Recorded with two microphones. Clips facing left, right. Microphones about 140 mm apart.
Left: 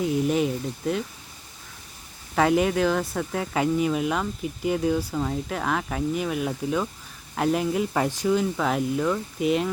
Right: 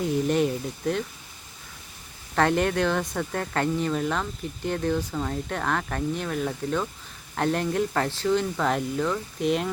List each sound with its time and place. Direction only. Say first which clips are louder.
0.0 s speech: even; centre (ahead or behind)
2.3 s speech: left 2 dB; 5° left (ahead or behind)